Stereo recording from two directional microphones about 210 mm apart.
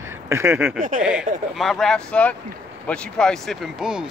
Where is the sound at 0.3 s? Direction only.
15° right (ahead or behind).